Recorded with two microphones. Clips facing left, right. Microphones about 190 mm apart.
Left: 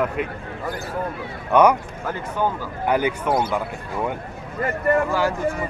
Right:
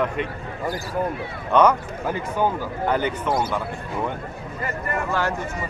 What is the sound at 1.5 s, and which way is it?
Speech, 10° left (ahead or behind).